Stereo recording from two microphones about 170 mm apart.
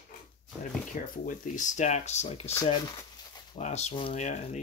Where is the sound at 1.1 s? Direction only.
50° left (ahead or behind).